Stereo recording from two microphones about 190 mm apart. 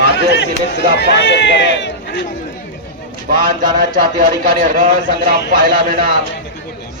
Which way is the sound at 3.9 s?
45° right (ahead or behind).